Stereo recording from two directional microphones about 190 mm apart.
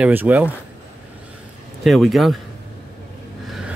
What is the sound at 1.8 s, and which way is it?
Speech, centre (ahead or behind).